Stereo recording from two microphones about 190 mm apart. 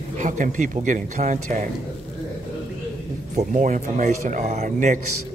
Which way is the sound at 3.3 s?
40° right (ahead or behind).